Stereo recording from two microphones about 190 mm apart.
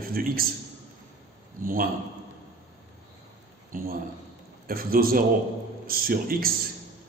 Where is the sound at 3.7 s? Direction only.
45° right (ahead or behind).